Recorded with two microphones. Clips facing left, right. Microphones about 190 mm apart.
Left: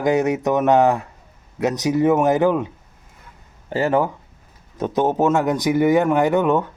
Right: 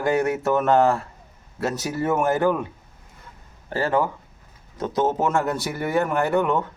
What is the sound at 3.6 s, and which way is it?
Speech, 20° left (ahead or behind).